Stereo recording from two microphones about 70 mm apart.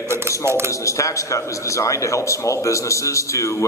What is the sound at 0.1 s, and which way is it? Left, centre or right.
Speech, right.